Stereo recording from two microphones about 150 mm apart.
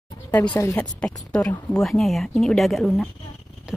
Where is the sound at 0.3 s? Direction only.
10° left (ahead or behind).